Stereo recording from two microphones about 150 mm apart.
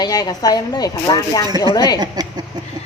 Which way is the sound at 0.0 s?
25° left (ahead or behind).